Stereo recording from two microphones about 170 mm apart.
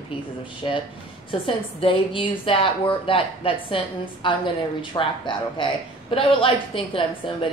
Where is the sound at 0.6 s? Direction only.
30° left (ahead or behind).